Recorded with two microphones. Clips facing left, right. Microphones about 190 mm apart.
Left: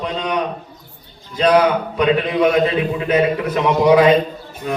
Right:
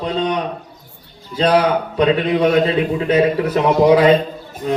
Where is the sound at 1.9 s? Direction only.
30° right (ahead or behind).